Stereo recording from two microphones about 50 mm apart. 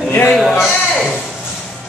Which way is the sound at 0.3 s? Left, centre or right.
Centre.